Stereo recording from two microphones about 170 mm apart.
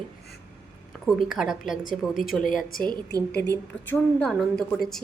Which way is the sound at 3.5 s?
10° left (ahead or behind).